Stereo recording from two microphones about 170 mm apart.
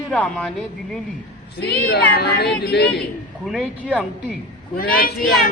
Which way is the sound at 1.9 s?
70° left (ahead or behind).